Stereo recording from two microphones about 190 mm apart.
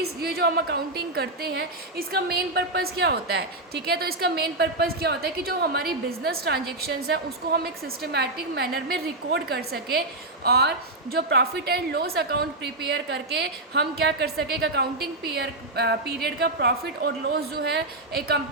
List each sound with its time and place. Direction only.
0.0 s a woman's voice: 55° right (ahead or behind)